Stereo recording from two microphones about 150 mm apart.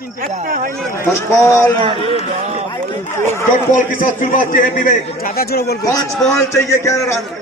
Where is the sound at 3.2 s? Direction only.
15° left (ahead or behind).